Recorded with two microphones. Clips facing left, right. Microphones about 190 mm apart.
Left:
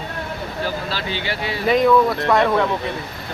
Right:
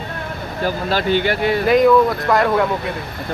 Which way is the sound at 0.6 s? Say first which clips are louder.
Right 9 dB; 50° right (ahead or behind).